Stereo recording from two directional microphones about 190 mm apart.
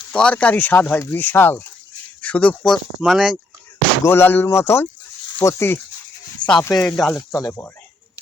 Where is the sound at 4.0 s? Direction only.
10° left (ahead or behind).